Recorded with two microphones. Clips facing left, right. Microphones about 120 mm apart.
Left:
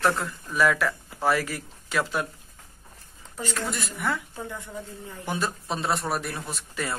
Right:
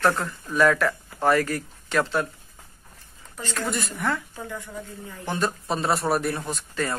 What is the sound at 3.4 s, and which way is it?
Speech, 10° left (ahead or behind).